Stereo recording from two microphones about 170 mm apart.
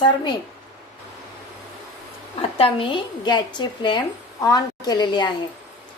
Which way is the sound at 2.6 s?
35° left (ahead or behind).